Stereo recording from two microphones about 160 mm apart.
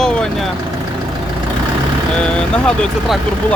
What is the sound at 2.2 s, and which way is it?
Speech, 5° left (ahead or behind).